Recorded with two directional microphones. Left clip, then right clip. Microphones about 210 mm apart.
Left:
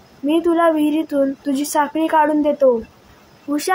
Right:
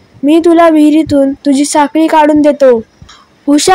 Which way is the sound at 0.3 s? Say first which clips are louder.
Right 10 dB; 40° right (ahead or behind).